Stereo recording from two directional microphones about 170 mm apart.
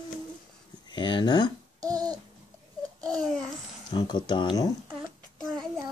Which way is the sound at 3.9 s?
25° left (ahead or behind).